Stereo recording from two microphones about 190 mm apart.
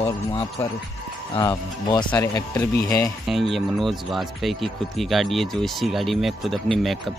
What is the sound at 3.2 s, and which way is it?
Speech, centre (ahead or behind).